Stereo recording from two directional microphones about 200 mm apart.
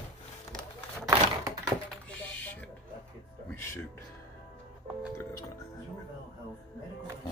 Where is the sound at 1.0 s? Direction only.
15° right (ahead or behind).